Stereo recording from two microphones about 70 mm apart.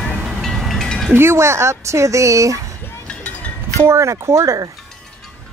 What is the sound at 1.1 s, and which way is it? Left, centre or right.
Speech, right.